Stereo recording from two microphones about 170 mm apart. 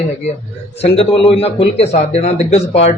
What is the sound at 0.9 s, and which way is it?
A man's voice, 35° left (ahead or behind).